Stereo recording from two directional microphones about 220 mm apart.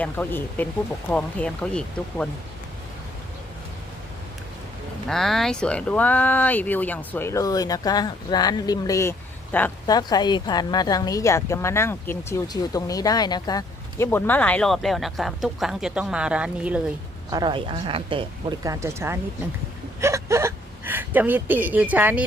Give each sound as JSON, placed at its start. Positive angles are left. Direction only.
{"t": 0.0, "sound": "speech", "side_deg": 10}
{"t": 5.0, "sound": "speech", "side_deg": 0}
{"t": 17.3, "sound": "speech", "side_deg": -20}
{"t": 20.0, "sound": "whimper", "side_deg": -15}